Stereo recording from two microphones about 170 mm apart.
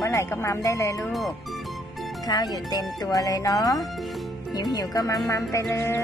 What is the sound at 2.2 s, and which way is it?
Speech, 25° left (ahead or behind).